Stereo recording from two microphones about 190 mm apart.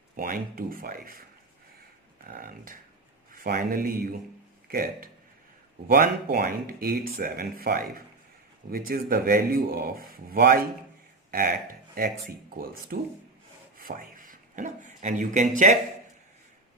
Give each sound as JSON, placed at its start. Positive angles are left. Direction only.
{"t": 0.2, "sound": "speech", "side_deg": -50}
{"t": 2.2, "sound": "speech", "side_deg": -50}